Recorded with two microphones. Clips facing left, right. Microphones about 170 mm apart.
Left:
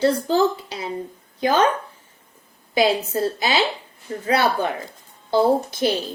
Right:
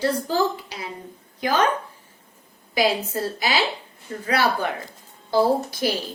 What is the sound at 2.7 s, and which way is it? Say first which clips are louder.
A woman's voice: left 3 dB; 25° left (ahead or behind).